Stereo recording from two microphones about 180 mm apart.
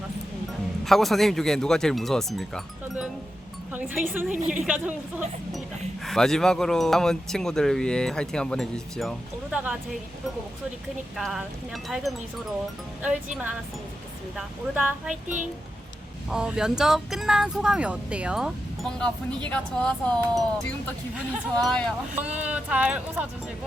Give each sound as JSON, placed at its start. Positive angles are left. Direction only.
{"t": 0.9, "sound": "speech", "side_deg": 0}
{"t": 4.4, "sound": "a woman's voice", "side_deg": -45}
{"t": 4.6, "sound": "speech", "side_deg": -5}
{"t": 6.1, "sound": "speech", "side_deg": 0}
{"t": 11.2, "sound": "speech", "side_deg": 0}
{"t": 16.3, "sound": "speech", "side_deg": -5}
{"t": 21.6, "sound": "speech", "side_deg": 5}
{"t": 22.1, "sound": "speech", "side_deg": -10}